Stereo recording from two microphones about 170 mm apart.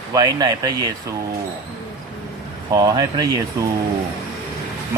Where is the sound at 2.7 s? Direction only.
20° right (ahead or behind).